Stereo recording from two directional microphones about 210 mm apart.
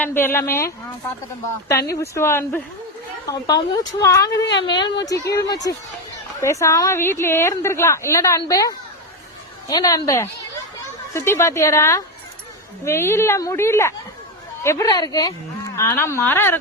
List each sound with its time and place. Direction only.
0.0 s a woman's voice: 10° left (ahead or behind)
1.9 s a woman's voice: 15° left (ahead or behind)